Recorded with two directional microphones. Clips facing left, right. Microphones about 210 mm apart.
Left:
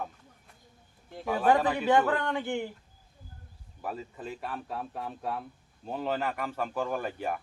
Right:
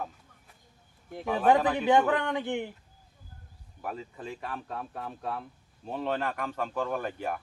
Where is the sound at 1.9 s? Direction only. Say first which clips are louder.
Right 1 dB; 15° right (ahead or behind).